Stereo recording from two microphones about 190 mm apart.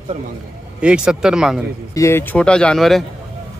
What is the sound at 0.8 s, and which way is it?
Speech, 5° right (ahead or behind).